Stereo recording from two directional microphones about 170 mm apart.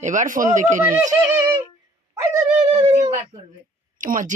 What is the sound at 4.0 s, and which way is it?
Speech, 50° right (ahead or behind).